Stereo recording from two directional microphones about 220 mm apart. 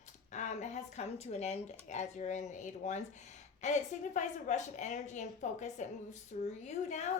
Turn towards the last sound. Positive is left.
turn(degrees=30)  # may be behind; listen again after turning